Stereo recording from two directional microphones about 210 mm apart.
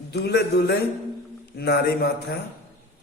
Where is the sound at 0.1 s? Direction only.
50° left (ahead or behind).